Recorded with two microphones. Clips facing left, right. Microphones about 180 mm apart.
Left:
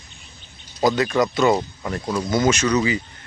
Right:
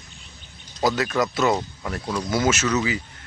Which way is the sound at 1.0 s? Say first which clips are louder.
Left 3 dB; 5° right (ahead or behind).